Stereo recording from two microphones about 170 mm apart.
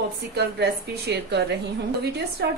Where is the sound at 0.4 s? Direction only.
75° right (ahead or behind).